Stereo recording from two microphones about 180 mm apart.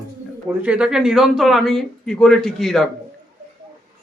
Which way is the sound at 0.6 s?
5° right (ahead or behind).